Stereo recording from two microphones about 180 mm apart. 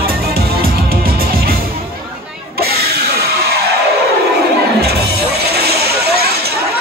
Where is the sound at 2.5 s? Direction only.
60° right (ahead or behind).